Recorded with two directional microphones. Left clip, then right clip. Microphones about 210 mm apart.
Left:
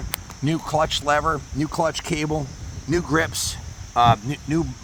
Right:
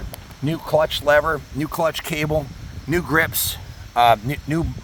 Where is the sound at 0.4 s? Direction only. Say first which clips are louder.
Right 3 dB; 30° right (ahead or behind).